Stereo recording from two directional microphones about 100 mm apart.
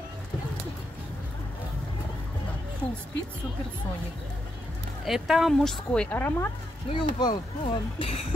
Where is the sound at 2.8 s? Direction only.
20° left (ahead or behind).